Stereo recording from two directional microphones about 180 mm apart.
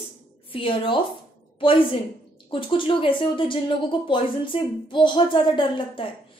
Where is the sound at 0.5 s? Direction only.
30° left (ahead or behind).